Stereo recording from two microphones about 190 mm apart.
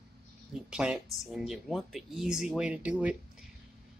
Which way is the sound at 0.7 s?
5° right (ahead or behind).